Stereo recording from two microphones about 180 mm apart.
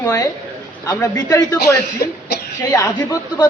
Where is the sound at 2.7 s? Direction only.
15° left (ahead or behind).